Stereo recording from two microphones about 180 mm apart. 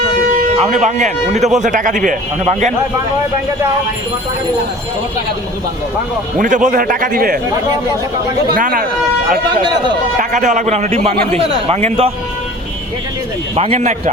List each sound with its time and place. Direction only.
0.6 s a man's voice: 40° right (ahead or behind)
6.4 s a man's voice: 45° right (ahead or behind)
8.5 s a man's voice: 55° right (ahead or behind)
10.2 s a man's voice: 45° right (ahead or behind)
13.6 s a man's voice: 40° right (ahead or behind)